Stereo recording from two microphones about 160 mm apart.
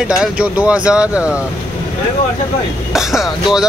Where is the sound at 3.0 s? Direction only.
5° right (ahead or behind).